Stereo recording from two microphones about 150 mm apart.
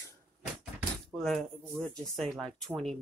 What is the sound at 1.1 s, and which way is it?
Speech, centre (ahead or behind).